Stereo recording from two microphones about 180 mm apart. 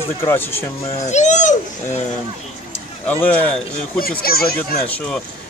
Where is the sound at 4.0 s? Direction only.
55° left (ahead or behind).